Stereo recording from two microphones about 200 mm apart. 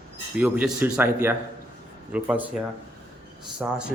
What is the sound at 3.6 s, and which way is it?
Speech, 5° right (ahead or behind).